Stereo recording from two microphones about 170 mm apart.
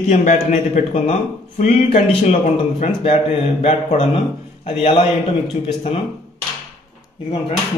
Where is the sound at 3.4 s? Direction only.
35° left (ahead or behind).